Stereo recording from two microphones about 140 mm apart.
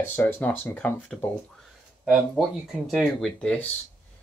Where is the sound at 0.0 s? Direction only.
15° left (ahead or behind).